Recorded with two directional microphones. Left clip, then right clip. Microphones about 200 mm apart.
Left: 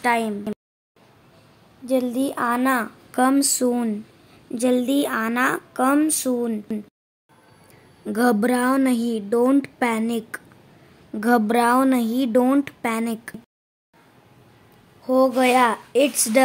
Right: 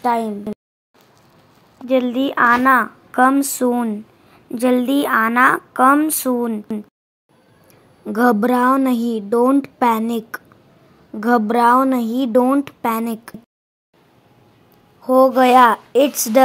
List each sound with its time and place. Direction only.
0.0 s a woman's voice: 10° left (ahead or behind)
1.9 s a woman's voice: 5° right (ahead or behind)
3.1 s a woman's voice: 5° left (ahead or behind)
4.5 s a woman's voice: 10° right (ahead or behind)
8.0 s a woman's voice: 10° right (ahead or behind)
11.1 s a woman's voice: centre (ahead or behind)
15.0 s a woman's voice: 15° right (ahead or behind)